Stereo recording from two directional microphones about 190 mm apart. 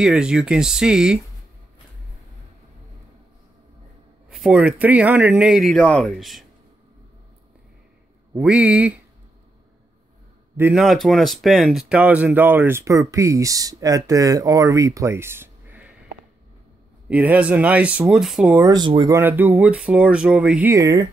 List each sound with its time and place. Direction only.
0.0 s a man's voice: 5° right (ahead or behind)
4.3 s a man's voice: 5° right (ahead or behind)
8.4 s speech: 5° right (ahead or behind)
10.6 s speech: 5° right (ahead or behind)
17.1 s speech: 5° right (ahead or behind)
18.6 s speech: 20° right (ahead or behind)
19.1 s speech: 10° right (ahead or behind)